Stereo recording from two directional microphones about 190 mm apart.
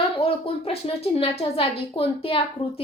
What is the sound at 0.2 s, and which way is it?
A woman's voice, 30° left (ahead or behind).